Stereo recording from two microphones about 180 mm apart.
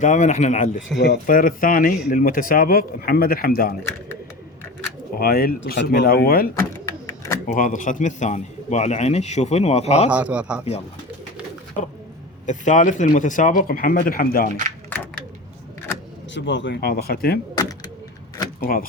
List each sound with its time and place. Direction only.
0.0 s a man's voice: 40° left (ahead or behind)
0.9 s speech: 75° left (ahead or behind)
1.3 s speech: 50° left (ahead or behind)
5.1 s a man's voice: 55° left (ahead or behind); by 10.1 s 35° left (ahead or behind)
10.1 s a man's voice: 5° right (ahead or behind)
12.5 s speech: 45° left (ahead or behind)
16.3 s speech: 85° left; by 17.4 s 60° left (ahead or behind)
17.5 s vehicle: 20° left (ahead or behind)
18.6 s speech: 55° left (ahead or behind)